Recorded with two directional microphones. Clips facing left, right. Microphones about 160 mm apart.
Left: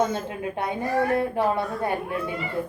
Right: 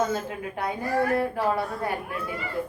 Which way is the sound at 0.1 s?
25° left (ahead or behind).